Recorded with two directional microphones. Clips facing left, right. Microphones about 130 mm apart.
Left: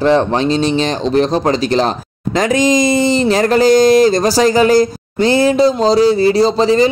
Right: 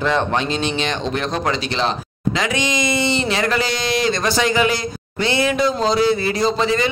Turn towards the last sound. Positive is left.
turn(degrees=35)  # may be behind; listen again after turning